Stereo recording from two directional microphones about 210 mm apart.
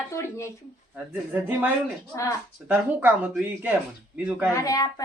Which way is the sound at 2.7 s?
10° right (ahead or behind).